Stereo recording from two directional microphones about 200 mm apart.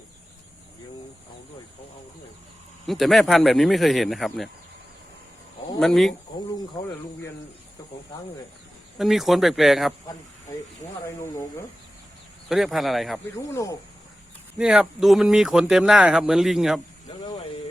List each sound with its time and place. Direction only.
2.8 s speech: centre (ahead or behind)
5.8 s speech: centre (ahead or behind)
9.0 s speech: centre (ahead or behind)
12.5 s speech: centre (ahead or behind)
13.5 s speech: 15° left (ahead or behind)
14.6 s speech: 5° right (ahead or behind)